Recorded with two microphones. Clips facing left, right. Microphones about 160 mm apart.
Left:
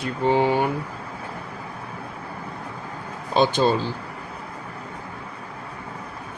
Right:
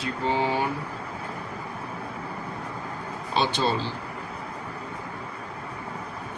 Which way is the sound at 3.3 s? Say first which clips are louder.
Left 6 dB; 45° left (ahead or behind).